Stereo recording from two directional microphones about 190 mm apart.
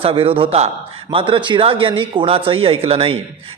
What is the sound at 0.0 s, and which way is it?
A man's voice, 30° right (ahead or behind).